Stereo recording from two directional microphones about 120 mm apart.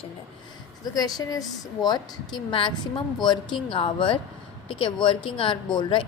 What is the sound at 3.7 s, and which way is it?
Speech, 45° left (ahead or behind).